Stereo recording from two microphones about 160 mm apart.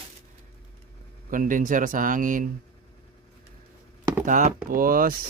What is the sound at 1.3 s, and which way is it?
Speech, 55° right (ahead or behind).